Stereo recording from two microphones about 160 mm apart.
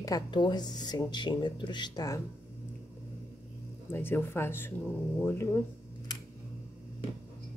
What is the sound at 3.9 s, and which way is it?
Speech, 15° left (ahead or behind).